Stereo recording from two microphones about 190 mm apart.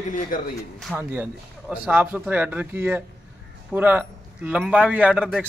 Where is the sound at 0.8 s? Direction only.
5° right (ahead or behind).